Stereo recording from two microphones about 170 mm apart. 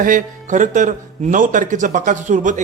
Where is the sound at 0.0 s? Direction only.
50° right (ahead or behind).